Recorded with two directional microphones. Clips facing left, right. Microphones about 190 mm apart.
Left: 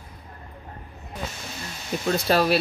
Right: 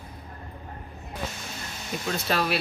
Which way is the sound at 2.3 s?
35° left (ahead or behind).